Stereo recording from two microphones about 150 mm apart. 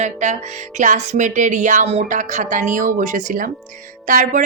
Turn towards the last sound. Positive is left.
turn(degrees=-65)  # may be behind; listen again after turning